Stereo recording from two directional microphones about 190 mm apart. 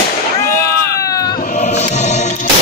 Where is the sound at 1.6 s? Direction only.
35° left (ahead or behind).